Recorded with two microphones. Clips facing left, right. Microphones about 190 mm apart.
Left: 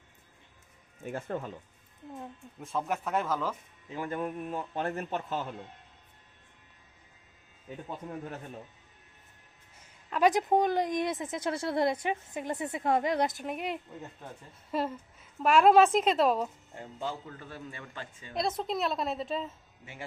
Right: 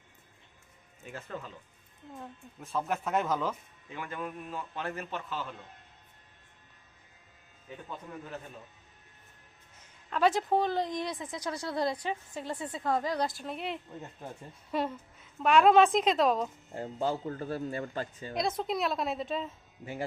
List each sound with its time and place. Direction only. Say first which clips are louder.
1.0 s a man's voice: left 6 dB; 50° left (ahead or behind)
2.1 s a woman's voice: left 2 dB; 15° left (ahead or behind)
3.8 s a man's voice: left 5 dB; 35° left (ahead or behind)
9.7 s a woman's voice: left 1 dB; 10° left (ahead or behind)
14.7 s a woman's voice: even; centre (ahead or behind)
16.7 s a man's voice: right 8 dB; 40° right (ahead or behind)
18.3 s a woman's voice: even; centre (ahead or behind)
19.8 s a man's voice: right 8 dB; 40° right (ahead or behind)